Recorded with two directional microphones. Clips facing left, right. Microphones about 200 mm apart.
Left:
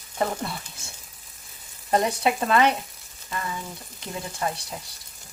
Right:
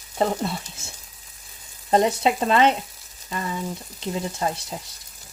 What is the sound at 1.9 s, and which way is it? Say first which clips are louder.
Frying: right 3 dB; 25° right (ahead or behind).